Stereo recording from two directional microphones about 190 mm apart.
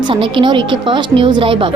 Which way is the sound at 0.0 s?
25° right (ahead or behind).